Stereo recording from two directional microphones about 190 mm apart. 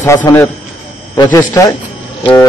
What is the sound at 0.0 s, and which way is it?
A man's voice, 15° left (ahead or behind).